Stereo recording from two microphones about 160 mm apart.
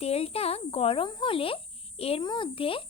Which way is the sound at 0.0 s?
40° left (ahead or behind).